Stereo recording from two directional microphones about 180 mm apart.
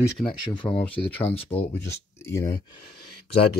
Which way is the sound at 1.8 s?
15° left (ahead or behind).